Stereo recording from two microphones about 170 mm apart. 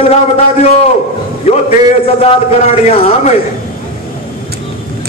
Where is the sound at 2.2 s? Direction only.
40° left (ahead or behind).